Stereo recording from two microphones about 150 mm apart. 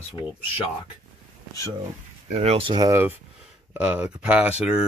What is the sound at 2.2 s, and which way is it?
Speech, 45° right (ahead or behind).